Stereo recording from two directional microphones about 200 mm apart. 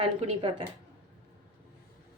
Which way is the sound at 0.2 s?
30° right (ahead or behind).